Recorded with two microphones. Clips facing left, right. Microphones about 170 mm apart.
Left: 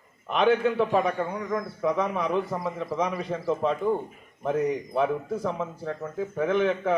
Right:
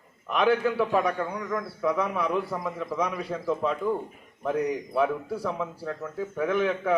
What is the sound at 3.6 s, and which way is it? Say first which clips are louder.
A man's voice: left 2 dB; 25° left (ahead or behind).